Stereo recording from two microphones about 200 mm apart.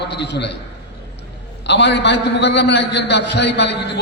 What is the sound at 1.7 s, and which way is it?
A man's voice, 60° left (ahead or behind).